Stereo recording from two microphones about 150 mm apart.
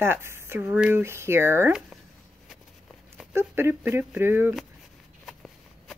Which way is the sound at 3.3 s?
15° right (ahead or behind).